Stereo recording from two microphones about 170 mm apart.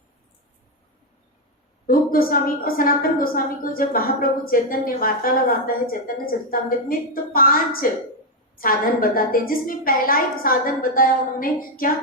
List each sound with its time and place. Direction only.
1.9 s a woman's voice: 55° left (ahead or behind)